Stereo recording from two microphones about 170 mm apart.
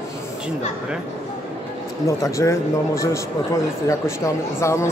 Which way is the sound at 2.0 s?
20° left (ahead or behind).